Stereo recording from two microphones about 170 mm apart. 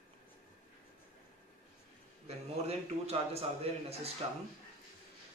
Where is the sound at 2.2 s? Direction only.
35° right (ahead or behind).